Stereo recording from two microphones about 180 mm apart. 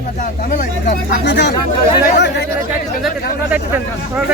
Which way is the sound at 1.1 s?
70° left (ahead or behind).